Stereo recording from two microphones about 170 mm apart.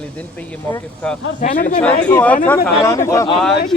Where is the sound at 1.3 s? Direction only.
50° left (ahead or behind).